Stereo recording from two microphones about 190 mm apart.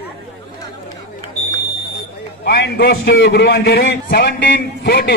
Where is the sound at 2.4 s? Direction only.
55° left (ahead or behind).